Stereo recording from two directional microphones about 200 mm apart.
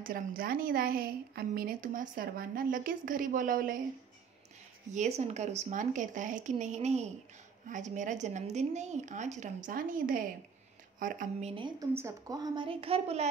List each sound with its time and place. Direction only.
0.0 s a woman's voice: 45° right (ahead or behind)
4.8 s a woman's voice: 35° right (ahead or behind)
11.9 s a woman's voice: 15° right (ahead or behind); by 13.3 s 30° right (ahead or behind)